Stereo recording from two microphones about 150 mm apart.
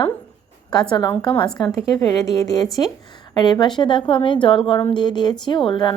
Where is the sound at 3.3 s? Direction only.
30° left (ahead or behind).